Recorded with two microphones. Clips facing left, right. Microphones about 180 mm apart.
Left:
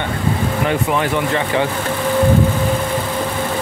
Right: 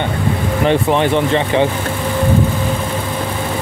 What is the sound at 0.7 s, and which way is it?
Speech, 25° right (ahead or behind).